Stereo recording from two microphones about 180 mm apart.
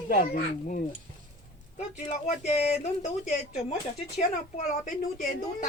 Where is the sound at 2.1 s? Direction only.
35° left (ahead or behind).